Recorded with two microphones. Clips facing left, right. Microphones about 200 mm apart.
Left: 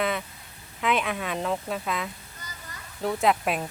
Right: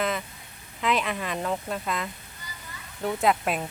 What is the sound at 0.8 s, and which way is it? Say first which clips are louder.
A woman's voice: even; centre (ahead or behind).